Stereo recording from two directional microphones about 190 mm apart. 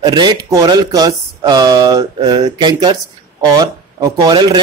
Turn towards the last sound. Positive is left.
turn(degrees=-20)  # may be behind; listen again after turning